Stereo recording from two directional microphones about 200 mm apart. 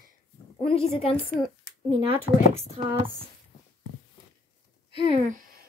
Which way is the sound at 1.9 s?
30° right (ahead or behind).